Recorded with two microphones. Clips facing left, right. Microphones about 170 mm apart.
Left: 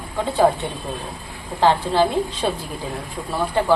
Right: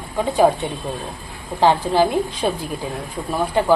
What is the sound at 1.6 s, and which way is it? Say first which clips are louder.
Speech: right 1 dB; 15° right (ahead or behind).